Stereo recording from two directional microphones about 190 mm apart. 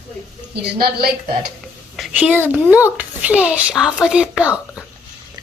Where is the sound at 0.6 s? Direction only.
55° right (ahead or behind).